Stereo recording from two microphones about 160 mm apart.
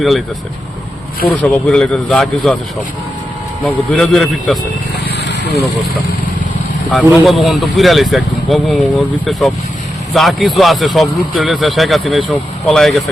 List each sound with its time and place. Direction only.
1.4 s speech: 5° left (ahead or behind)
3.6 s speech: 5° left (ahead or behind)
5.2 s vehicle: 90° left
6.9 s speech: centre (ahead or behind)